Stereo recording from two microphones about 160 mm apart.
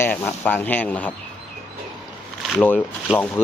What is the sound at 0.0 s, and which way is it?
Speech, 15° left (ahead or behind).